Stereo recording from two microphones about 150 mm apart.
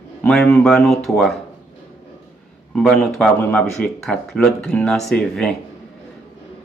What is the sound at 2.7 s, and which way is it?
Speech, 5° left (ahead or behind).